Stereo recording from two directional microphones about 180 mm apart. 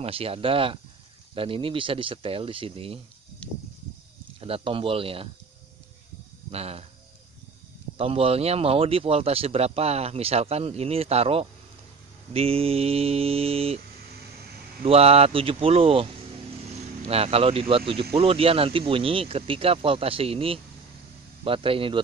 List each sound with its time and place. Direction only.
0.0 s speech: 30° right (ahead or behind)
3.4 s a sound: 5° left (ahead or behind)
4.4 s speech: 30° right (ahead or behind)
6.5 s speech: 35° right (ahead or behind)
8.0 s speech: 30° right (ahead or behind)
14.9 s speech: 35° right (ahead or behind)